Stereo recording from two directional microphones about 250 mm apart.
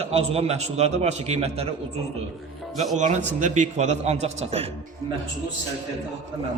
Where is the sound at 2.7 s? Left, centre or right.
Right.